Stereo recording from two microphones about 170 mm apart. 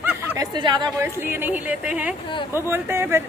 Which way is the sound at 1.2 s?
10° right (ahead or behind).